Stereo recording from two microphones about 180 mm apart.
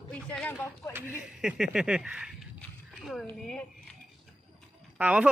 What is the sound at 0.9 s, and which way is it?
A woman's voice, 10° right (ahead or behind).